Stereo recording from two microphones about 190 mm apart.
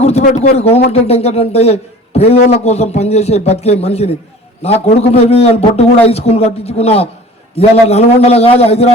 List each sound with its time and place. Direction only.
0.0 s a man's voice: 35° left (ahead or behind)